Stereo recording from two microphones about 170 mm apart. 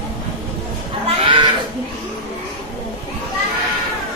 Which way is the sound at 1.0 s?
30° right (ahead or behind).